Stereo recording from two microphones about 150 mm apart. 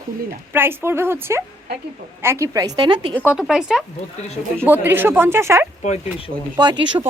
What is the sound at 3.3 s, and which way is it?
Speech, 5° right (ahead or behind).